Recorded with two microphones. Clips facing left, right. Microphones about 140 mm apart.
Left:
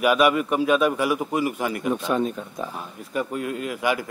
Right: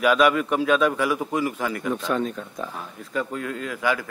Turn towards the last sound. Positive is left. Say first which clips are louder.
# left 1 dB
turn(degrees=15)  # may be behind; listen again after turning